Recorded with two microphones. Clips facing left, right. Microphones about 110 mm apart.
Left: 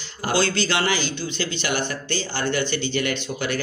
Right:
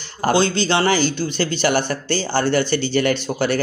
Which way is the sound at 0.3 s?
20° right (ahead or behind).